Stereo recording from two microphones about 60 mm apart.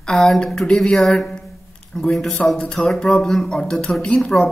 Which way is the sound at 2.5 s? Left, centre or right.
Centre.